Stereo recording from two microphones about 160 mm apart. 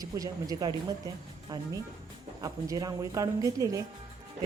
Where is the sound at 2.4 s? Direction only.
20° right (ahead or behind).